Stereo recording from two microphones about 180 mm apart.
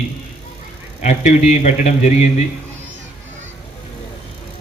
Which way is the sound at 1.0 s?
40° left (ahead or behind).